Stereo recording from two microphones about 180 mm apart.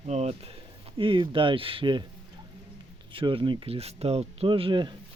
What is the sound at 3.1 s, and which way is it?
Speech, 30° right (ahead or behind).